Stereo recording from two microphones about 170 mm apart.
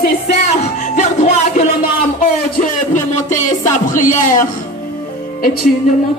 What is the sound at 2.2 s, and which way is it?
Music, 45° left (ahead or behind).